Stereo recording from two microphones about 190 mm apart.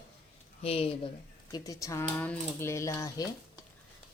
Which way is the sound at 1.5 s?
20° left (ahead or behind).